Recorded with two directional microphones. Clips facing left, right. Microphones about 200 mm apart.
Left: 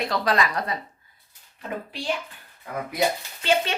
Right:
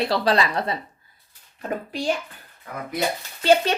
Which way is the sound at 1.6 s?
45° right (ahead or behind).